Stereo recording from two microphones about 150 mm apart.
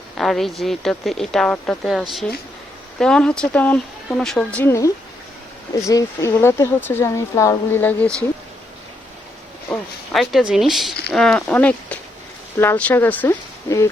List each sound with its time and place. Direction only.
0.2 s a woman's voice: centre (ahead or behind); by 4.9 s 15° left (ahead or behind)
5.9 s speech: 20° left (ahead or behind)
9.6 s a woman's voice: centre (ahead or behind); by 13.9 s 20° left (ahead or behind)